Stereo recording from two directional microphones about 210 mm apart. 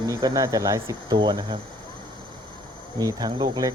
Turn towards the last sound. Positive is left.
turn(degrees=-20)  # may be behind; listen again after turning